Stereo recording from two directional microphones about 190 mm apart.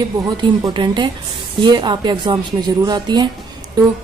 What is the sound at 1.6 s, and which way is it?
A woman's voice, 25° right (ahead or behind).